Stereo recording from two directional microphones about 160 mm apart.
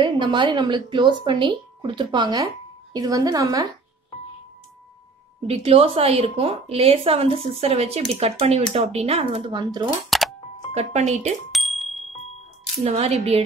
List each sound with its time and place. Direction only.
0.0 s speech: 30° right (ahead or behind)
5.5 s speech: 40° right (ahead or behind)
10.0 s music: centre (ahead or behind)
10.7 s speech: 45° right (ahead or behind)
11.5 s a sound: centre (ahead or behind)
12.8 s speech: 45° right (ahead or behind)